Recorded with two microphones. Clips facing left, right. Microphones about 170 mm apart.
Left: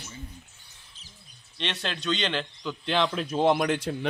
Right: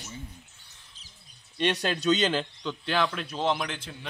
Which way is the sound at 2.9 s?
20° left (ahead or behind).